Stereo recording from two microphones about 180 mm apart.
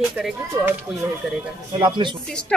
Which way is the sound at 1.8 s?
25° right (ahead or behind).